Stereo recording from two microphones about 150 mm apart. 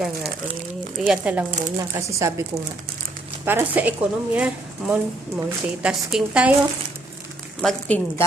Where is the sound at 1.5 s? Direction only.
55° right (ahead or behind).